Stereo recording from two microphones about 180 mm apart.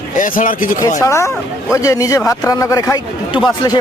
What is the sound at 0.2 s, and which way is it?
Speech, 50° left (ahead or behind).